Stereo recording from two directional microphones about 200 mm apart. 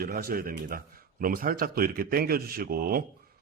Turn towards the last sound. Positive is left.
turn(degrees=-45)  # may be behind; listen again after turning